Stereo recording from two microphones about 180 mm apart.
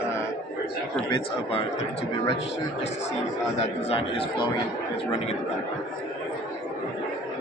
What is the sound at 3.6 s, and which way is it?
Speech, 30° left (ahead or behind).